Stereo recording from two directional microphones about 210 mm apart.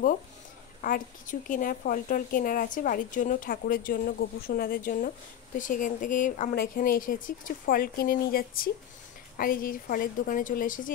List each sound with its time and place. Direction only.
0.8 s a woman's voice: 40° left (ahead or behind)